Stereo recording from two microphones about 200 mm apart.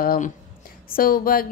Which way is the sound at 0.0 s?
45° left (ahead or behind).